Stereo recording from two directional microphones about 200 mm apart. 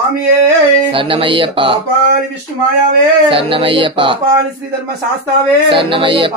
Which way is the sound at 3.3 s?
25° right (ahead or behind).